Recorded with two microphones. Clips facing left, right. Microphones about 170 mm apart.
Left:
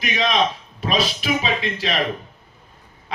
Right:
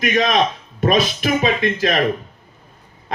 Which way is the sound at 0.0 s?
45° right (ahead or behind).